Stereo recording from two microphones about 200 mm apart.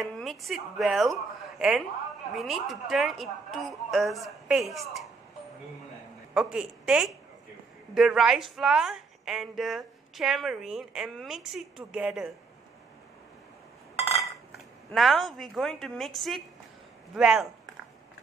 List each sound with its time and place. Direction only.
0.0 s a woman's voice: centre (ahead or behind)
6.3 s a woman's voice: 5° right (ahead or behind)
13.9 s chink: 30° left (ahead or behind)
15.0 s a woman's voice: centre (ahead or behind)